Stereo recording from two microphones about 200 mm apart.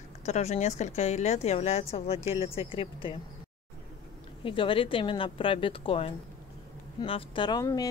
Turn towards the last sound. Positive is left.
turn(degrees=20)  # may be behind; listen again after turning